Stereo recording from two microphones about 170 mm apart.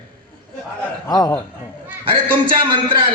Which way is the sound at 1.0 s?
20° left (ahead or behind).